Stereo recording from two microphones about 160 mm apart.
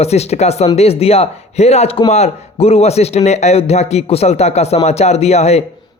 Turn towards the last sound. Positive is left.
turn(degrees=40)  # may be behind; listen again after turning